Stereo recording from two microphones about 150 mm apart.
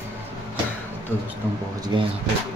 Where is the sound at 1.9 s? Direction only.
30° right (ahead or behind).